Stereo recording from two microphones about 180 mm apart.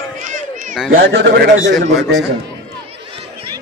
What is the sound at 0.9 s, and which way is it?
Speech, 85° right.